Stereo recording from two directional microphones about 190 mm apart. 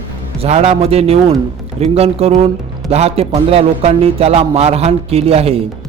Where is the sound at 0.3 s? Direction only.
35° right (ahead or behind).